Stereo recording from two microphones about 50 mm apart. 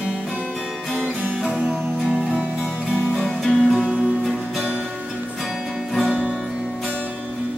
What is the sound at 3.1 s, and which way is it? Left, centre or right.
Music, centre.